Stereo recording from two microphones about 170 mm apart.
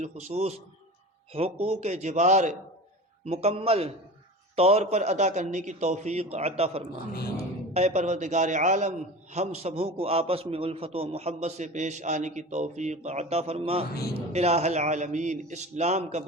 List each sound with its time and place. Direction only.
0.0 s a man's voice: 40° right (ahead or behind)